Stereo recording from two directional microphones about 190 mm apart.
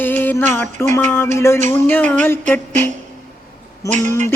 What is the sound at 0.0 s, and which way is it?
Music, 10° left (ahead or behind).